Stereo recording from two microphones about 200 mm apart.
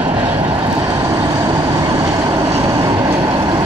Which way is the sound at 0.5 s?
20° right (ahead or behind).